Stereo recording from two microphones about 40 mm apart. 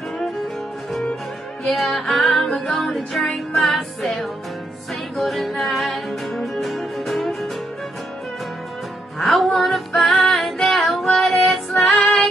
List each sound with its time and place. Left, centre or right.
1.6 s music: centre
9.2 s female singing: centre